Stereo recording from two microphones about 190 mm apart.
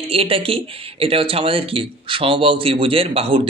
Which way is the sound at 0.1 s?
30° right (ahead or behind).